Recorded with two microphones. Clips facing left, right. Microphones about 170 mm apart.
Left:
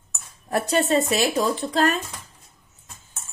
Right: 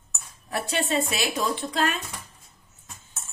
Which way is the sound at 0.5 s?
45° left (ahead or behind).